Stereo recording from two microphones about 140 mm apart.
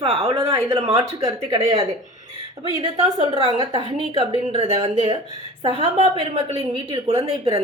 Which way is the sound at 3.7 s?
40° right (ahead or behind).